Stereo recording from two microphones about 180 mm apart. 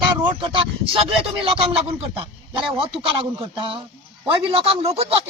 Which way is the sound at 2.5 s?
30° right (ahead or behind).